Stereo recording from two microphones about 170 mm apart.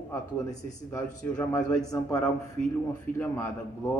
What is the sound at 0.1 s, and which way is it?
Speech, 15° left (ahead or behind).